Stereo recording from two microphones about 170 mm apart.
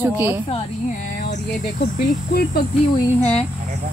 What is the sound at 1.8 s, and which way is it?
Speech, 65° left (ahead or behind).